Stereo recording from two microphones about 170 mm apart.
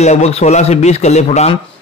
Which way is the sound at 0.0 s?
40° left (ahead or behind).